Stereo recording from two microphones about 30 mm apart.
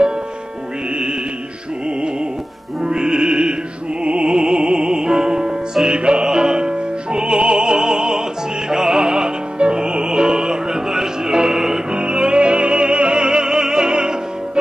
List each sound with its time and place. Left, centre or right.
2.8 s music: right
10.9 s music: centre
11.9 s music: right